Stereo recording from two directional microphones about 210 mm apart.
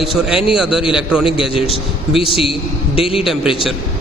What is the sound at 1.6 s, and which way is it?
A man's voice, 25° left (ahead or behind).